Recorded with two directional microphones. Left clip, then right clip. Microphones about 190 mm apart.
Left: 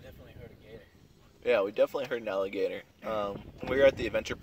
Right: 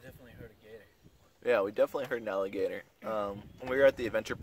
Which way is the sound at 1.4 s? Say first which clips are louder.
Left 2 dB; 15° left (ahead or behind).